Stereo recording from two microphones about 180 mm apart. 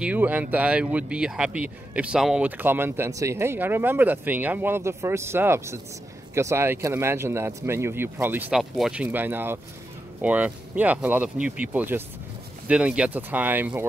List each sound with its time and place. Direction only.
0.0 s speech: 10° right (ahead or behind)